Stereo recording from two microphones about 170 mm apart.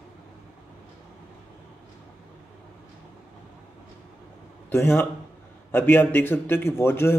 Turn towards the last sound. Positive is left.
turn(degrees=15)  # may be behind; listen again after turning